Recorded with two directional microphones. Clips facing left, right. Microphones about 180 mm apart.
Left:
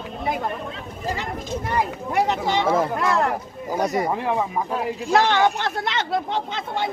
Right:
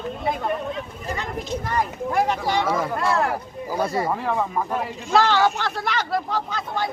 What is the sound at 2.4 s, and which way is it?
Speech, 25° left (ahead or behind).